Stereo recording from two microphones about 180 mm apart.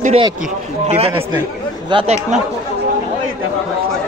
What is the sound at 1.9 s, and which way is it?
Speech, 30° right (ahead or behind).